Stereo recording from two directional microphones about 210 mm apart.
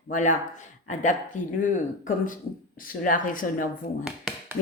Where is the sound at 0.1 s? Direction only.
35° left (ahead or behind).